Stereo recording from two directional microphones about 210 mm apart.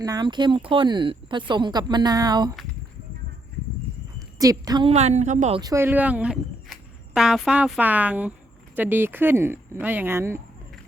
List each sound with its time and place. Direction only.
0.0 s speech: 20° right (ahead or behind)
4.4 s speech: 15° right (ahead or behind); by 5.5 s 35° right (ahead or behind)
5.5 s speech: 15° right (ahead or behind)